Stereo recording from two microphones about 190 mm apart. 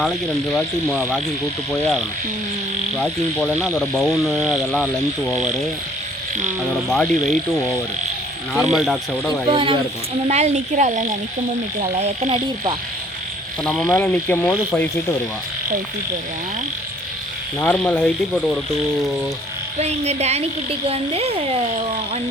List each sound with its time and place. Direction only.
0.5 s speech: 5° left (ahead or behind)
6.8 s speech: centre (ahead or behind)
8.5 s speech: centre (ahead or behind)
9.5 s a woman's voice: 25° right (ahead or behind)
13.7 s speech: centre (ahead or behind)
17.6 s speech: 10° left (ahead or behind)
19.8 s a woman's voice: 35° right (ahead or behind)